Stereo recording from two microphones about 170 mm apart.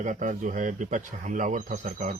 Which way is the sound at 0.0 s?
50° right (ahead or behind).